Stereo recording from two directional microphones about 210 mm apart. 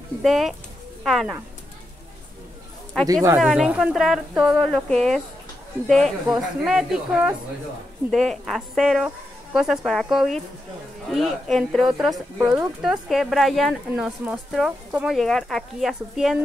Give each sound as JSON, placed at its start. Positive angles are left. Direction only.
{"t": 0.2, "sound": "speech", "side_deg": 0}
{"t": 2.9, "sound": "speech", "side_deg": 5}